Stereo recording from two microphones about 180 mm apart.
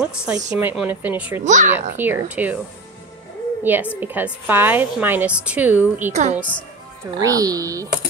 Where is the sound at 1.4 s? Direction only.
45° right (ahead or behind).